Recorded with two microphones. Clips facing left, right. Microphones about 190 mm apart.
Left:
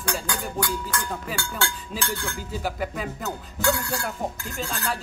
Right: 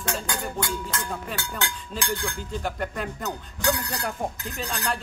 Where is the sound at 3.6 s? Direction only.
20° right (ahead or behind).